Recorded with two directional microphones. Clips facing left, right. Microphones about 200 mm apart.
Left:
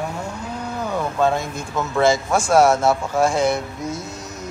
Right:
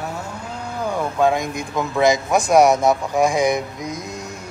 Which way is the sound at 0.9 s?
15° right (ahead or behind).